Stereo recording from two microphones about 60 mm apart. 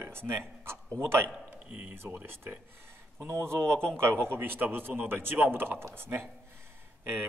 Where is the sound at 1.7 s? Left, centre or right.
Right.